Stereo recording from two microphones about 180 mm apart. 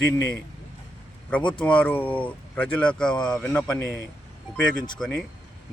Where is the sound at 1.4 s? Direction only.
25° left (ahead or behind).